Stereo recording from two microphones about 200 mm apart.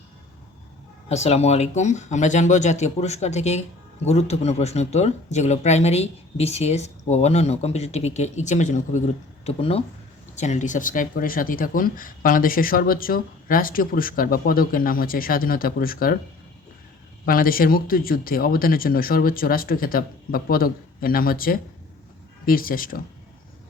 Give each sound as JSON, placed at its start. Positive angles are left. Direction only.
{"t": 1.0, "sound": "speech", "side_deg": 30}
{"t": 17.2, "sound": "speech", "side_deg": 45}